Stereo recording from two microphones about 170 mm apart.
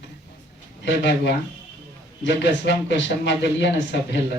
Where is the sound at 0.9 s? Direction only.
90° left.